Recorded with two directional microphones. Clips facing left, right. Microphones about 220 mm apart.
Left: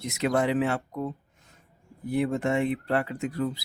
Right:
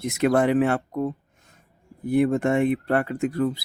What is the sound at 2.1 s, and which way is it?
Speech, 50° right (ahead or behind).